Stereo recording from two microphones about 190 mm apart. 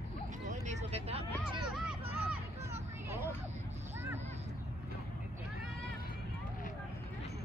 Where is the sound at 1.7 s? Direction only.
5° right (ahead or behind).